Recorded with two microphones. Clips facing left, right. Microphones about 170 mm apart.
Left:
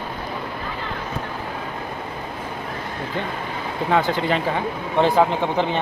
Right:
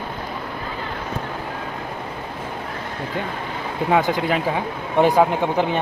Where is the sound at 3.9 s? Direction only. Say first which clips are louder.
Right 1 dB; 10° right (ahead or behind).